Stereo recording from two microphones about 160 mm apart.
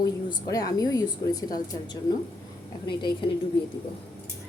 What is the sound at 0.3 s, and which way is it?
Speech, 25° left (ahead or behind).